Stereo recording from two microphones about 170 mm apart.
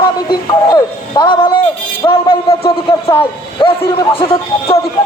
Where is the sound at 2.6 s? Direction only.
35° left (ahead or behind).